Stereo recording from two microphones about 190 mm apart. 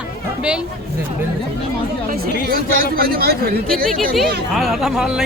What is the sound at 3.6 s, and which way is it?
Speech, 5° left (ahead or behind).